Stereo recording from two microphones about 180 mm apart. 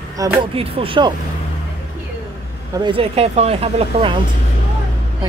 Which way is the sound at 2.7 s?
25° right (ahead or behind).